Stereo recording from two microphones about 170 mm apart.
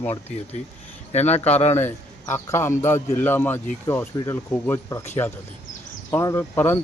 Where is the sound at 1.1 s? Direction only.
40° left (ahead or behind).